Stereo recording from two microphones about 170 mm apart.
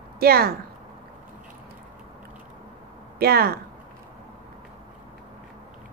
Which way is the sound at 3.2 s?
65° right (ahead or behind).